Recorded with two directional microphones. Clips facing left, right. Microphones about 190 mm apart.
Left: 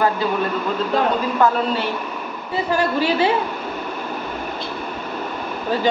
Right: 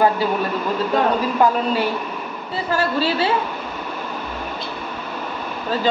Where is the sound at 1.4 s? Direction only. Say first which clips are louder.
Even; 15° right (ahead or behind).